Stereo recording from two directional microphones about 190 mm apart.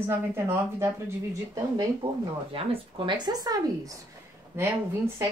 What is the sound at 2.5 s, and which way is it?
A woman's voice, 25° right (ahead or behind).